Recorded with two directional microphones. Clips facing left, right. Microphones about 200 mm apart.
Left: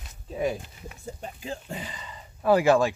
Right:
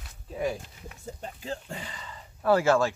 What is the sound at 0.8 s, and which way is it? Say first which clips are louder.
Speech: left 1 dB; 10° left (ahead or behind).